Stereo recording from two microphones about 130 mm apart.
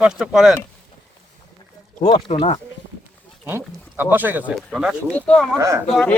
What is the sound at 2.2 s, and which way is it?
Speech, 55° left (ahead or behind).